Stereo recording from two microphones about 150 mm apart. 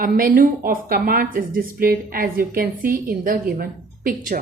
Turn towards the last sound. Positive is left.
turn(degrees=-70)  # may be behind; listen again after turning